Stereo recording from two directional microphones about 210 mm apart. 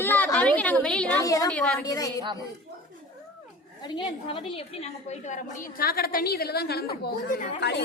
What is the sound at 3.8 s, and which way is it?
A woman's voice, 20° left (ahead or behind).